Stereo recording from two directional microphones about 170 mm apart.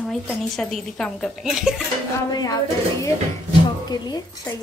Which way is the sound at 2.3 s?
20° left (ahead or behind).